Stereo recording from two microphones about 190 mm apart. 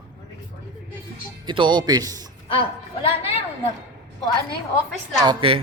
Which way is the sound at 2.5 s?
30° left (ahead or behind).